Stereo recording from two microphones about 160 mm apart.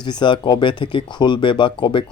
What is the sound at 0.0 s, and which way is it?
Speech, 30° left (ahead or behind).